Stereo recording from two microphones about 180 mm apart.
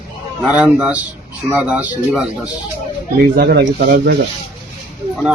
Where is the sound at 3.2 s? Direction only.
55° right (ahead or behind).